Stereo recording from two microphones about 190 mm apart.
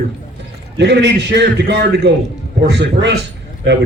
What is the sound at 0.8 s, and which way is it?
A man's voice, 65° right (ahead or behind).